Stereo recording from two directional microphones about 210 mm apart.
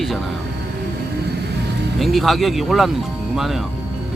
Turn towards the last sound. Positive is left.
turn(degrees=0)  # may be behind; listen again after turning